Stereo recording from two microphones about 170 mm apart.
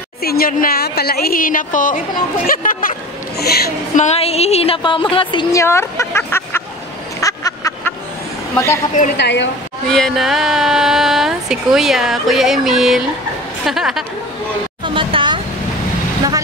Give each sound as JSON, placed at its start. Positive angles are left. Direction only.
{"t": 0.2, "sound": "a woman's voice", "side_deg": 65}
{"t": 3.9, "sound": "a woman's voice", "side_deg": 40}
{"t": 7.2, "sound": "a sound", "side_deg": 20}
{"t": 9.1, "sound": "a woman's voice", "side_deg": 90}
{"t": 9.8, "sound": "speech", "side_deg": 5}
{"t": 15.0, "sound": "a sound", "side_deg": -30}